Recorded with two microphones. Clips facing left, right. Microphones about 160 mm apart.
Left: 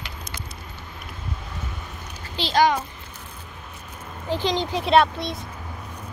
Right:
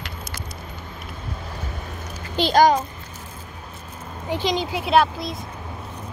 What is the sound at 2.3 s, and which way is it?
Speech, 45° right (ahead or behind).